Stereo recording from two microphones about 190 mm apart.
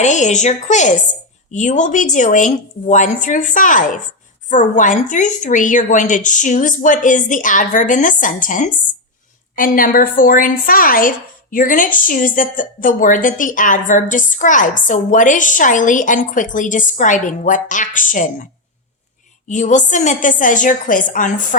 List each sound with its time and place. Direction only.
0.0 s a woman's voice: 40° left (ahead or behind)
19.5 s a woman's voice: 40° left (ahead or behind)